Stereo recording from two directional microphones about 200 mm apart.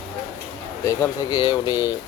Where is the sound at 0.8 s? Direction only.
15° left (ahead or behind).